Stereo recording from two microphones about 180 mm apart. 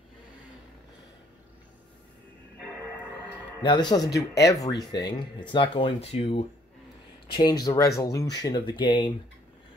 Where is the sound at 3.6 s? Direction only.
25° left (ahead or behind).